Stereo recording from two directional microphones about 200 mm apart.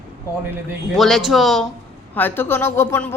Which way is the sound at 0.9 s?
Centre (ahead or behind).